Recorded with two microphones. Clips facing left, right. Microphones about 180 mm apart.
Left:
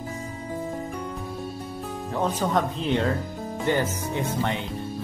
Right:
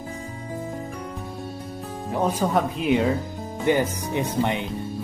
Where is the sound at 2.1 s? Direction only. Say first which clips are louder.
Right 2 dB; 10° right (ahead or behind).